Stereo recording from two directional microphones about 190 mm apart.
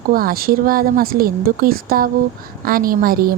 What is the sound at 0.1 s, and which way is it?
Speech, 50° right (ahead or behind).